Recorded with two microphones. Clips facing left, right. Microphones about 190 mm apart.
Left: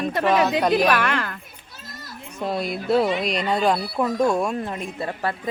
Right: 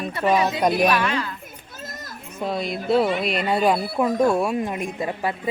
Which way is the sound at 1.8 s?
45° right (ahead or behind).